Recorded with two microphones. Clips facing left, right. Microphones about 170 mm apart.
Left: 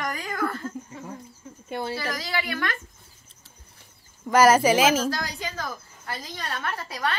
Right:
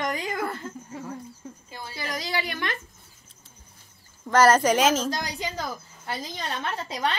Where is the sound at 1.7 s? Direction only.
65° left (ahead or behind).